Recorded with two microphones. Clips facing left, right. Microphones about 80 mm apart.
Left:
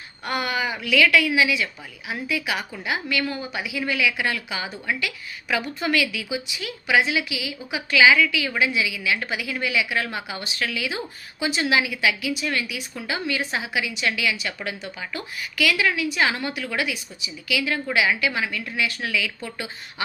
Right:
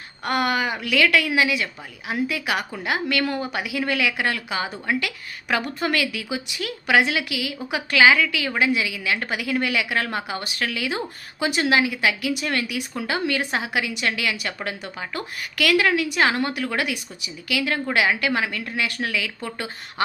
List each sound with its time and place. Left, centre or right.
0.3 s a woman's voice: right
12.3 s a woman's voice: right